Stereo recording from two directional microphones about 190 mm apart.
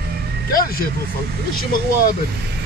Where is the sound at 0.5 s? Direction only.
50° left (ahead or behind).